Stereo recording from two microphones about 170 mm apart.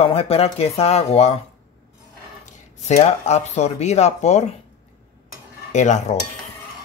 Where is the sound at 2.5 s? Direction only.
40° left (ahead or behind).